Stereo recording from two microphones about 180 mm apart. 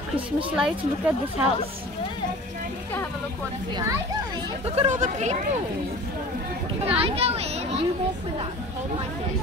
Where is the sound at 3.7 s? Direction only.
25° right (ahead or behind).